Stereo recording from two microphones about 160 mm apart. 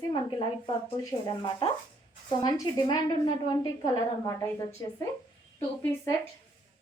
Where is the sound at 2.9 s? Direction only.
25° left (ahead or behind).